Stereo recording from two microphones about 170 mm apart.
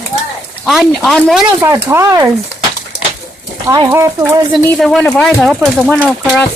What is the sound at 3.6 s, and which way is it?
Speech, 20° right (ahead or behind).